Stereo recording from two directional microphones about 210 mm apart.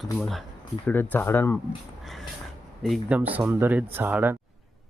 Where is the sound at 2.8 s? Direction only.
5° right (ahead or behind).